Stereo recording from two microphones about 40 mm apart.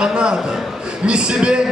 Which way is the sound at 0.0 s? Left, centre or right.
Right.